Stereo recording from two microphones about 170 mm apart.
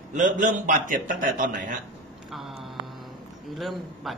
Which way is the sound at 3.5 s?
Centre (ahead or behind).